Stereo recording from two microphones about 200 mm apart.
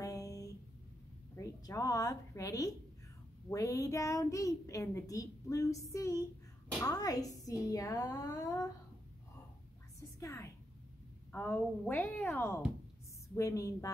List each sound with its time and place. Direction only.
0.0 s music: 15° left (ahead or behind)
1.3 s a sound: 15° left (ahead or behind)
3.4 s a child's voice: 15° left (ahead or behind)
10.2 s a child's voice: 15° left (ahead or behind)